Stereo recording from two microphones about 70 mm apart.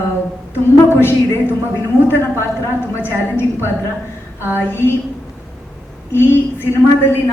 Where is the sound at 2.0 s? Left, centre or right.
Left.